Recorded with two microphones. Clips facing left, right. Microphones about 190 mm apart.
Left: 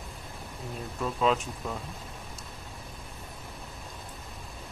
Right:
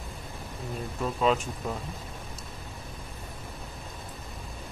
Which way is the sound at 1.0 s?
Centre (ahead or behind).